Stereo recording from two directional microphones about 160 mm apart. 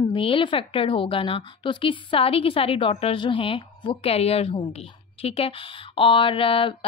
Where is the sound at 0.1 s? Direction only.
35° left (ahead or behind).